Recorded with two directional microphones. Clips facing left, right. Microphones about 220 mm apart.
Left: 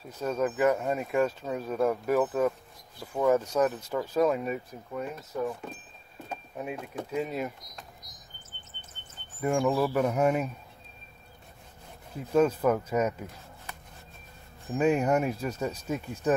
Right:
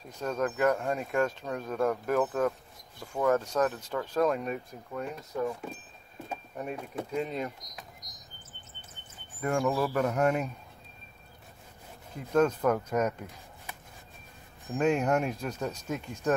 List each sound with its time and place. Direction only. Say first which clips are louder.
0.2 s speech: left 2 dB; 5° left (ahead or behind)
8.0 s a sound: even; 55° left (ahead or behind)
9.4 s speech: left 2 dB; centre (ahead or behind)
12.3 s speech: left 1 dB; 5° left (ahead or behind)
14.7 s speech: left 2 dB; 5° left (ahead or behind)